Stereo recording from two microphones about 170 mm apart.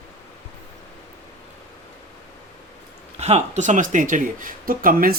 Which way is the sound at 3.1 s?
40° right (ahead or behind).